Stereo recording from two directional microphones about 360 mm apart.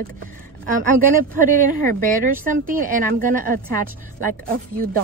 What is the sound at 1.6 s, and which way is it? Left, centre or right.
A woman's voice, right.